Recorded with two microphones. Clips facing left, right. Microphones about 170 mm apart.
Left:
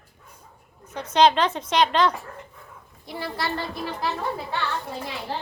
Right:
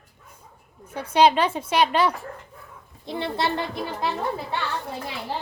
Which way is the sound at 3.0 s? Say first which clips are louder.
Right 4 dB; 25° right (ahead or behind).